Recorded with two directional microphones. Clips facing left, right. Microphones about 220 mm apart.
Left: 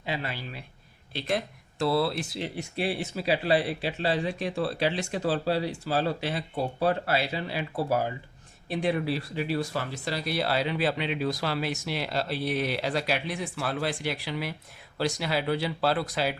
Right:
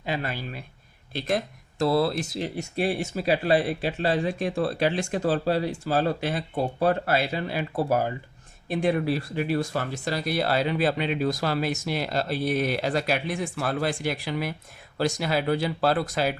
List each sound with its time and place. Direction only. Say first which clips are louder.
0.0 s speech: right 3 dB; 45° right (ahead or behind)